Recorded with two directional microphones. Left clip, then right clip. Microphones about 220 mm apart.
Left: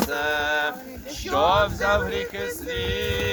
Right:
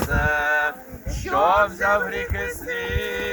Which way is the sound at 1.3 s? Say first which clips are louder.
Right 2 dB; 20° left (ahead or behind).